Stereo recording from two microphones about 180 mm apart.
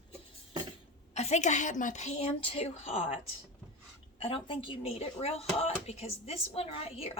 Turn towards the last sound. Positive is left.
turn(degrees=35)  # may be behind; listen again after turning